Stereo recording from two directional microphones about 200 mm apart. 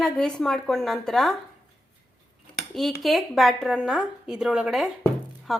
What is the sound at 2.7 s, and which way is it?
A woman's voice, centre (ahead or behind).